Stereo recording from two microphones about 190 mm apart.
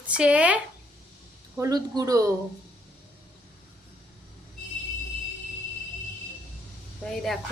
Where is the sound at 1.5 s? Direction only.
15° right (ahead or behind).